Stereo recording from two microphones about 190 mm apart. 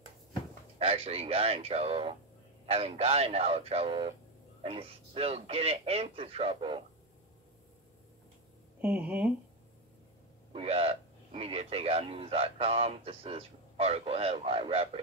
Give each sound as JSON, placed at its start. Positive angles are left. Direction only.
{"t": 0.7, "sound": "speech", "side_deg": -30}
{"t": 8.8, "sound": "speech", "side_deg": -5}
{"t": 10.5, "sound": "speech", "side_deg": -30}